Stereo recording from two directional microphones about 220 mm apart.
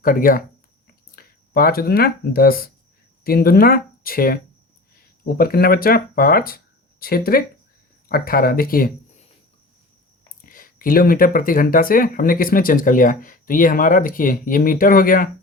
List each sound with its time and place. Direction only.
0.0 s speech: 40° left (ahead or behind)
0.9 s a sound: 40° left (ahead or behind)
3.2 s speech: 45° left (ahead or behind)
10.4 s speech: 40° left (ahead or behind)